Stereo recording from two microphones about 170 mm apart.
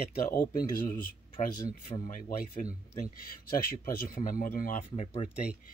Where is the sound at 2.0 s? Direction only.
50° left (ahead or behind).